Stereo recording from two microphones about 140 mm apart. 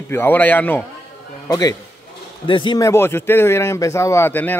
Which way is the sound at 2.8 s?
20° left (ahead or behind).